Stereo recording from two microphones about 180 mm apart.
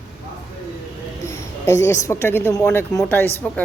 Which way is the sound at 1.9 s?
15° left (ahead or behind).